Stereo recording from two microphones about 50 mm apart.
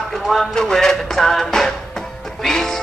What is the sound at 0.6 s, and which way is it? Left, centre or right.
Music, centre.